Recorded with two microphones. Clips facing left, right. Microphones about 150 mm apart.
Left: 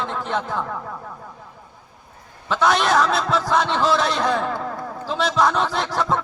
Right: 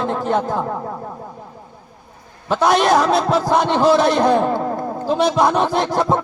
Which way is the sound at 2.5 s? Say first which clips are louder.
Right 4 dB; 45° right (ahead or behind).